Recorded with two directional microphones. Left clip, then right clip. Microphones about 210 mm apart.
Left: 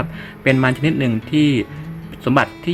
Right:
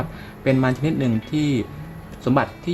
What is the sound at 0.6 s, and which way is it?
Speech, 20° left (ahead or behind).